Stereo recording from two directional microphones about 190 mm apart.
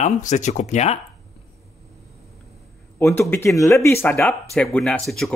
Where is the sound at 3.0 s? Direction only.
10° left (ahead or behind).